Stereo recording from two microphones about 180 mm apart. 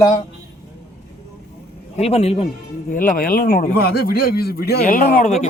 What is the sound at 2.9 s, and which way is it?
A man's voice, 50° left (ahead or behind).